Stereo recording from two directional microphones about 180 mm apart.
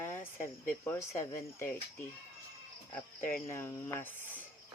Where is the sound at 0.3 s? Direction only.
50° left (ahead or behind).